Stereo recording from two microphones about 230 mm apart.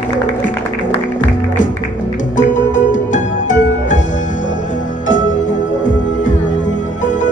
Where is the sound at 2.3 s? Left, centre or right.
Left.